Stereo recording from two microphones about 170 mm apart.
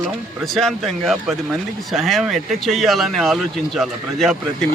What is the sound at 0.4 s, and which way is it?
Speech, centre (ahead or behind).